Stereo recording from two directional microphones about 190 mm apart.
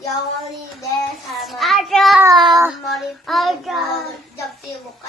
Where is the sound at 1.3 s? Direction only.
Centre (ahead or behind).